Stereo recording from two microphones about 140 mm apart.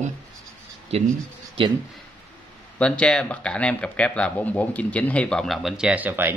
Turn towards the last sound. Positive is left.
turn(degrees=-15)  # may be behind; listen again after turning